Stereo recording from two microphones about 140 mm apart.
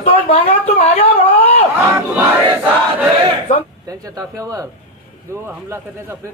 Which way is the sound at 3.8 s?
25° right (ahead or behind).